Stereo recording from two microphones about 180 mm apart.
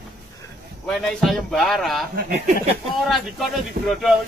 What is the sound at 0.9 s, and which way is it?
Speech, 5° left (ahead or behind).